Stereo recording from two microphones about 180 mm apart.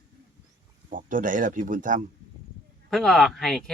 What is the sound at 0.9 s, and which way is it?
Speech, 45° right (ahead or behind).